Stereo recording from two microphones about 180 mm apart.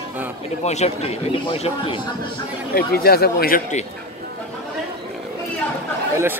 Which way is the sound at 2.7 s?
60° left (ahead or behind).